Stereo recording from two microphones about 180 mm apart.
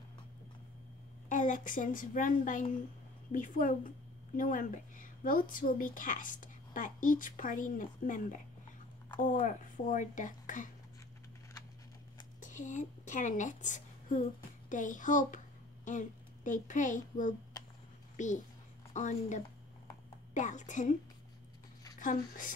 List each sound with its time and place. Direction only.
1.3 s a woman's voice: 45° left (ahead or behind)
12.4 s a woman's voice: 45° left (ahead or behind)
21.9 s speech: 45° left (ahead or behind)